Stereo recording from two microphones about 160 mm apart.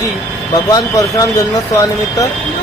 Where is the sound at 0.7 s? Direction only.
20° left (ahead or behind).